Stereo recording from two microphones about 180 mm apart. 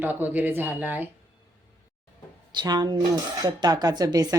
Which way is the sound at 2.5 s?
25° right (ahead or behind).